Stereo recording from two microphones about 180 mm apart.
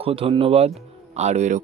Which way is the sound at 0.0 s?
30° right (ahead or behind).